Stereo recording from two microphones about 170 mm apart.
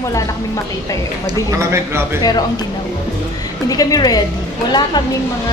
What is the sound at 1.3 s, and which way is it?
Speech, 20° right (ahead or behind).